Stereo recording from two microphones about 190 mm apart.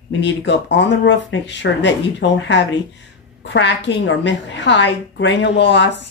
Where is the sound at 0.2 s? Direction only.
70° left (ahead or behind).